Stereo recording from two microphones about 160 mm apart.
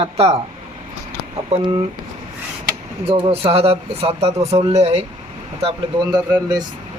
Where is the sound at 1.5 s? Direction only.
45° right (ahead or behind).